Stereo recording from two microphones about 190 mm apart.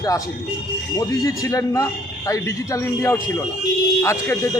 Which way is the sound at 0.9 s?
20° left (ahead or behind).